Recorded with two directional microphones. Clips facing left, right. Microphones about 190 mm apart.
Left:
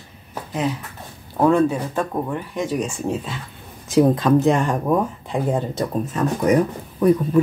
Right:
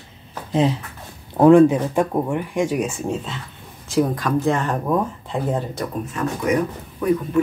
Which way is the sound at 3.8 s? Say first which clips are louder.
Left 5 dB; 20° left (ahead or behind).